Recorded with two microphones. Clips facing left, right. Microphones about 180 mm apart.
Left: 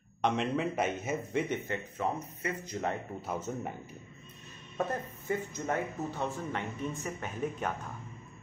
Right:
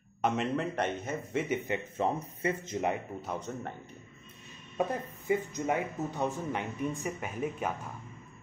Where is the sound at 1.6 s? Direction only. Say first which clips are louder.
Right 3 dB; 15° right (ahead or behind).